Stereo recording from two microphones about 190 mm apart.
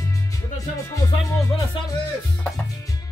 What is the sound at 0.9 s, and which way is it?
Speech, 15° left (ahead or behind).